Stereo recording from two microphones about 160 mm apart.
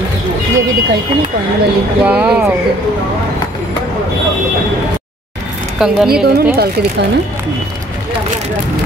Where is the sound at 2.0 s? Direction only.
10° right (ahead or behind).